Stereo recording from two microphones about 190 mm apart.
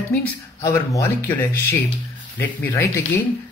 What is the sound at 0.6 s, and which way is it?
Speech, 15° left (ahead or behind).